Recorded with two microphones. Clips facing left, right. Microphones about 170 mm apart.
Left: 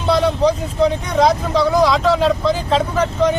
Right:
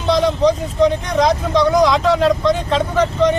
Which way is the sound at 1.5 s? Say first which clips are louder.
Right 4 dB; centre (ahead or behind).